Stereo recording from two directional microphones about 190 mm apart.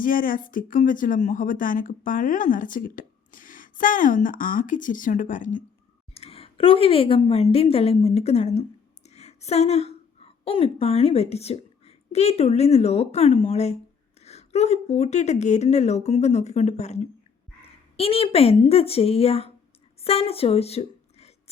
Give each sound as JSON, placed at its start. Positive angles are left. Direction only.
{"t": 0.0, "sound": "speech", "side_deg": 45}
{"t": 6.1, "sound": "a woman's voice", "side_deg": 30}
{"t": 20.0, "sound": "music", "side_deg": 30}